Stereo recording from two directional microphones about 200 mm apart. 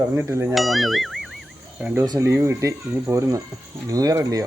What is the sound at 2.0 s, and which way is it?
Speech, 15° right (ahead or behind).